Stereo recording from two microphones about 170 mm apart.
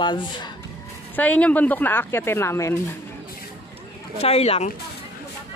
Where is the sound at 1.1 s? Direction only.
10° left (ahead or behind).